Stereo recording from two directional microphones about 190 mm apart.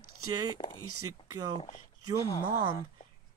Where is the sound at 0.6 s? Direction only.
30° left (ahead or behind).